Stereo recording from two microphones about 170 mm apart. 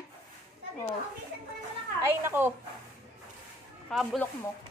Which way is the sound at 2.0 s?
15° right (ahead or behind).